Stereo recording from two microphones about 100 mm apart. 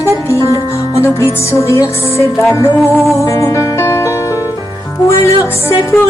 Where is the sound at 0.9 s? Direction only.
30° left (ahead or behind).